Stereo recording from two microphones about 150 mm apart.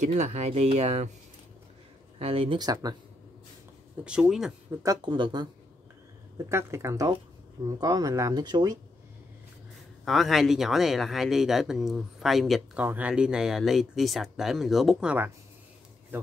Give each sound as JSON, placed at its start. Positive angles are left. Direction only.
{"t": 0.0, "sound": "speech", "side_deg": -45}
{"t": 2.1, "sound": "speech", "side_deg": -40}
{"t": 2.6, "sound": "speech", "side_deg": -25}
{"t": 4.0, "sound": "speech", "side_deg": -5}
{"t": 4.8, "sound": "speech", "side_deg": -30}
{"t": 6.3, "sound": "speech", "side_deg": -15}
{"t": 10.0, "sound": "speech", "side_deg": 0}